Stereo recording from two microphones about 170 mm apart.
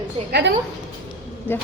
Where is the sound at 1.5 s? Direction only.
10° left (ahead or behind).